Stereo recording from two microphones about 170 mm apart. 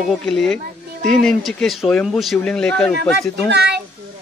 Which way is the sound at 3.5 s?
80° right.